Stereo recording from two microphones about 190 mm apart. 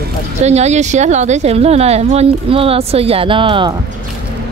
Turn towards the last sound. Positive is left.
turn(degrees=-25)  # may be behind; listen again after turning